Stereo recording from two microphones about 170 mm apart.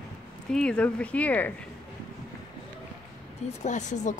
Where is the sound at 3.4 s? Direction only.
45° left (ahead or behind).